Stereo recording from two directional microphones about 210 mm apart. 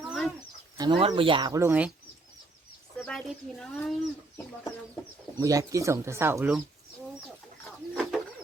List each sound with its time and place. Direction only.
0.1 s chicken: centre (ahead or behind)
0.8 s speech: 25° right (ahead or behind)
3.0 s speech: centre (ahead or behind)
5.4 s speech: 15° right (ahead or behind)
7.9 s bird: centre (ahead or behind)